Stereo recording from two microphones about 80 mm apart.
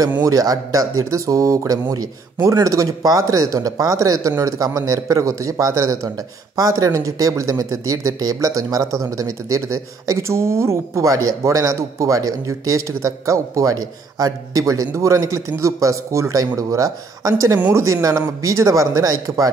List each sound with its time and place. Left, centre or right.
0.2 s a man's voice: right